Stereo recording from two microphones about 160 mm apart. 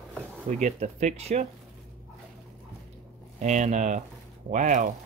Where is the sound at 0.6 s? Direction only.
45° right (ahead or behind).